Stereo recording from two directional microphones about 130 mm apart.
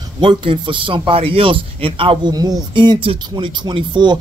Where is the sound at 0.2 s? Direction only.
40° right (ahead or behind).